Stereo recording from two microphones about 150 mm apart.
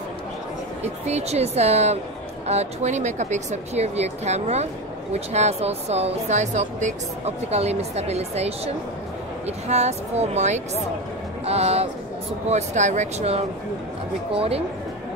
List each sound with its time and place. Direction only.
1.0 s speech: 45° right (ahead or behind)
9.7 s speech: 45° right (ahead or behind)